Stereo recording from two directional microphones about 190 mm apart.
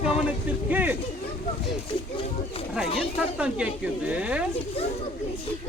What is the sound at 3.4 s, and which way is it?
Speech, 5° right (ahead or behind).